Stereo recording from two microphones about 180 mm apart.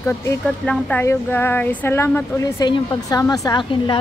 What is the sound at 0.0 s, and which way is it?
A woman's voice, 15° left (ahead or behind).